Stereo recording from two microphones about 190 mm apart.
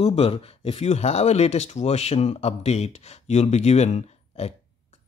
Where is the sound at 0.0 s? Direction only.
30° left (ahead or behind).